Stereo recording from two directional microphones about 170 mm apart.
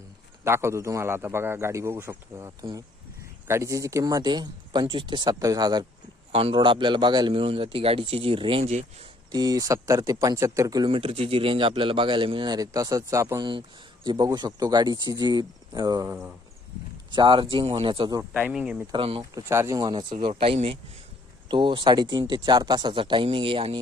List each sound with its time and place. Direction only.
0.4 s a man's voice: 15° right (ahead or behind); by 9.0 s 35° right (ahead or behind)
9.3 s speech: 25° right (ahead or behind)
17.1 s speech: 30° right (ahead or behind)
18.2 s a man's voice: 10° right (ahead or behind)
18.9 s a man's voice: 30° right (ahead or behind)
19.3 s a man's voice: 15° right (ahead or behind)